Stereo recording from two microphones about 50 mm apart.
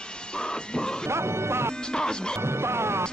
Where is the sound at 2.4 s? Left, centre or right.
Right.